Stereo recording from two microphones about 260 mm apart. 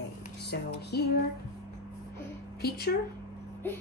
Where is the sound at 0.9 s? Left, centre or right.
Left.